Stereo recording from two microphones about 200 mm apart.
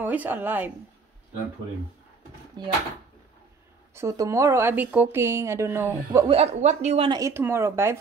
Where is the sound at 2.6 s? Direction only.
20° right (ahead or behind).